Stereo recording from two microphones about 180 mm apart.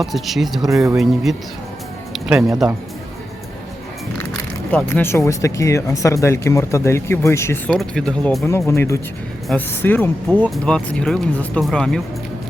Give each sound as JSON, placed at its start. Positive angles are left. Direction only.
{"t": 0.0, "sound": "speech", "side_deg": 0}
{"t": 2.1, "sound": "music", "side_deg": 0}
{"t": 4.7, "sound": "speech", "side_deg": 10}
{"t": 7.7, "sound": "speech", "side_deg": 0}
{"t": 8.4, "sound": "speech", "side_deg": 15}